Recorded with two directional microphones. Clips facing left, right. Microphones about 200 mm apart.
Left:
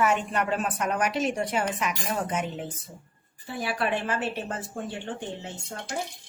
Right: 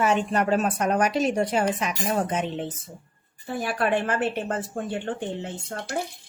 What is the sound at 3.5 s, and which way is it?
A woman's voice, 50° right (ahead or behind).